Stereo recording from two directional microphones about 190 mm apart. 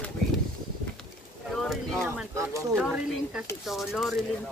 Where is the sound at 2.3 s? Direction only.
15° right (ahead or behind).